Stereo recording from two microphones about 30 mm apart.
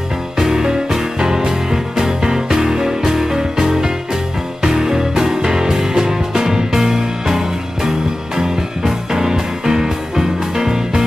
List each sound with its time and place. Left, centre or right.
0.4 s music: centre